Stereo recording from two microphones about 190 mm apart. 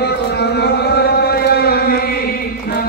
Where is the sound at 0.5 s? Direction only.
60° left (ahead or behind).